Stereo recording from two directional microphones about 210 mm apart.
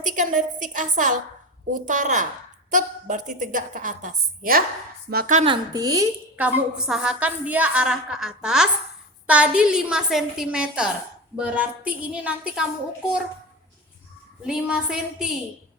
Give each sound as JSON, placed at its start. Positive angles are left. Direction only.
{"t": 0.0, "sound": "a woman's voice", "side_deg": -35}
{"t": 5.7, "sound": "a woman's voice", "side_deg": -15}
{"t": 14.4, "sound": "a woman's voice", "side_deg": -5}